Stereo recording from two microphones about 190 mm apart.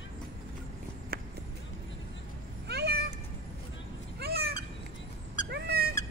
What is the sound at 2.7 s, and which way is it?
Cat, 60° right (ahead or behind).